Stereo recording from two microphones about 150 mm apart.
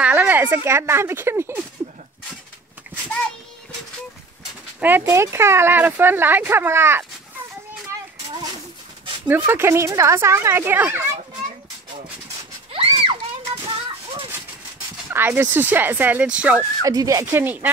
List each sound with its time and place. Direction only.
0.0 s speech: 10° right (ahead or behind)
4.7 s speech: 10° right (ahead or behind)
9.3 s speech: 15° right (ahead or behind)
12.7 s a sound: 40° right (ahead or behind)
15.0 s speech: 15° right (ahead or behind)
16.8 s speech: 25° right (ahead or behind)